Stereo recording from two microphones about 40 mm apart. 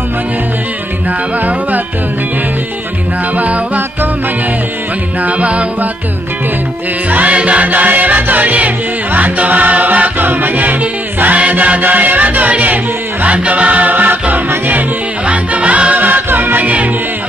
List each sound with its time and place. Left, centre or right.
3.3 s music: right
5.2 s music: right
7.1 s music: right
7.6 s music: right
15.2 s music: right
16.1 s music: right